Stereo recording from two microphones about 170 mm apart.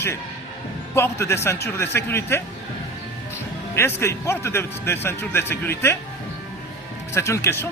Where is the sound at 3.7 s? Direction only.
15° left (ahead or behind).